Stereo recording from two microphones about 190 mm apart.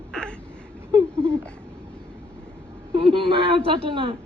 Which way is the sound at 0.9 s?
25° right (ahead or behind).